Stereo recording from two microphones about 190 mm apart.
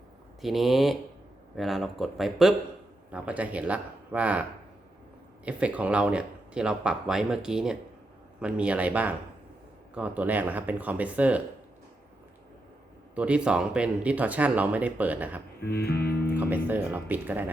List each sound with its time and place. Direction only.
0.4 s speech: centre (ahead or behind)
5.5 s speech: 5° right (ahead or behind)
13.1 s speech: 5° right (ahead or behind)
15.6 s music: 55° left (ahead or behind)
16.4 s speech: 10° right (ahead or behind)